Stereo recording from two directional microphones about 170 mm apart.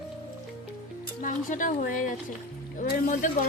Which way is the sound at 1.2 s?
50° left (ahead or behind).